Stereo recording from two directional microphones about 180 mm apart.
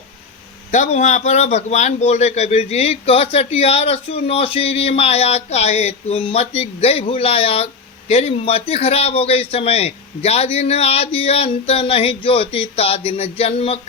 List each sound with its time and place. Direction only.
0.7 s a man's voice: 40° left (ahead or behind)